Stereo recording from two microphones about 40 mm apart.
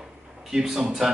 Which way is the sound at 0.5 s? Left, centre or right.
Centre.